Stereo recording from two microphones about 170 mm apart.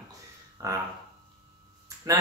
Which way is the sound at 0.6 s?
20° right (ahead or behind).